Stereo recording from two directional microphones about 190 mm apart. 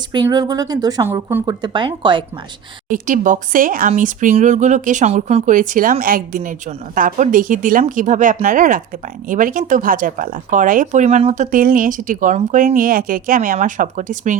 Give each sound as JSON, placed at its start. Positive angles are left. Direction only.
{"t": 0.1, "sound": "speech", "side_deg": -20}
{"t": 1.6, "sound": "speech", "side_deg": -25}
{"t": 2.9, "sound": "speech", "side_deg": -45}